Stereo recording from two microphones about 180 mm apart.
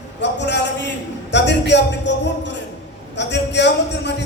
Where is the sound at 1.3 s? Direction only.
75° left (ahead or behind).